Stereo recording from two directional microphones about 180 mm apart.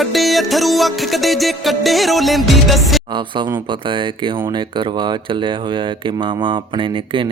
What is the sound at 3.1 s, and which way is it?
Speech, 25° right (ahead or behind).